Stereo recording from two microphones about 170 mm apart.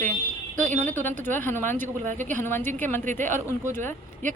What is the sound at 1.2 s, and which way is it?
Speech, 10° left (ahead or behind).